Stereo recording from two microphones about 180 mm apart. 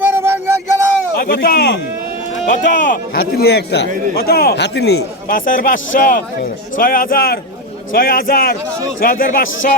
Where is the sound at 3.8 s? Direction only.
45° right (ahead or behind).